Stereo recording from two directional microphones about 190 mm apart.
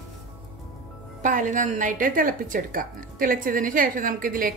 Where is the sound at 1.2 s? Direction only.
45° right (ahead or behind).